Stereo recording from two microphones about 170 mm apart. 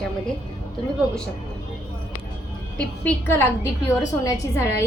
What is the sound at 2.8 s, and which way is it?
A woman's voice, 10° left (ahead or behind).